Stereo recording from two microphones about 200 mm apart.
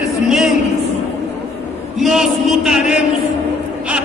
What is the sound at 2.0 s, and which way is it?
Music, centre (ahead or behind).